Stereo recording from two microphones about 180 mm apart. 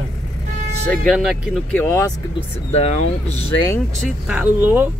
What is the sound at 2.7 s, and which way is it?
Speech, 35° left (ahead or behind).